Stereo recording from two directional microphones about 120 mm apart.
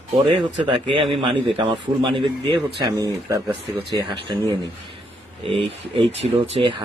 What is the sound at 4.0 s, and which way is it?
Speech, 40° right (ahead or behind).